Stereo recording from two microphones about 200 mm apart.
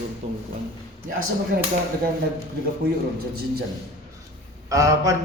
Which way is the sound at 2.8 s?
55° right (ahead or behind).